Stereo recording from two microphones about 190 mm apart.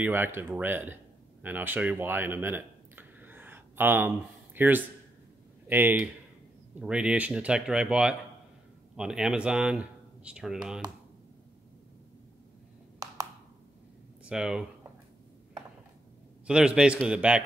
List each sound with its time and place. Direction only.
0.0 s speech: 10° right (ahead or behind)
1.4 s a sound: 10° right (ahead or behind)
4.6 s speech: 10° right (ahead or behind)
13.0 s a sound: 20° right (ahead or behind)
14.2 s speech: 5° right (ahead or behind)
16.4 s speech: 5° right (ahead or behind)